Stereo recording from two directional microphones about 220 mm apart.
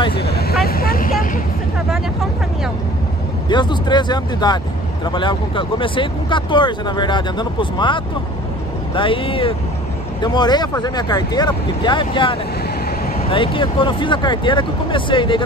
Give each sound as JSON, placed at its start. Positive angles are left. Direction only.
{"t": 0.1, "sound": "speech", "side_deg": 45}
{"t": 0.7, "sound": "vehicle", "side_deg": 45}
{"t": 3.4, "sound": "speech", "side_deg": 20}